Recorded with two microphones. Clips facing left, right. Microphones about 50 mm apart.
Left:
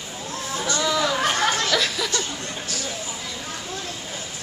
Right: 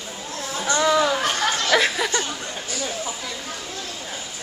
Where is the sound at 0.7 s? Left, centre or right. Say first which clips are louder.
Right 4 dB; right.